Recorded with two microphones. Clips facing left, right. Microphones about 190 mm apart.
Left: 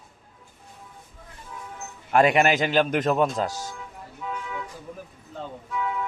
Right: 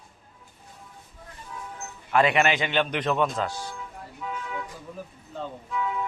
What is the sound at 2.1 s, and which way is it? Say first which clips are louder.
A man's voice: left 3 dB; 40° left (ahead or behind).